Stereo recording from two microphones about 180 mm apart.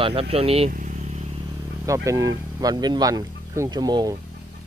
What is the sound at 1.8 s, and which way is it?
Speech, 15° right (ahead or behind).